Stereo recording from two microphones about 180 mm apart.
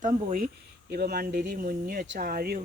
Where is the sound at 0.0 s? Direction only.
50° right (ahead or behind).